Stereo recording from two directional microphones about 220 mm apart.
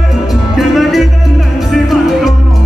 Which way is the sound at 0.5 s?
Centre (ahead or behind).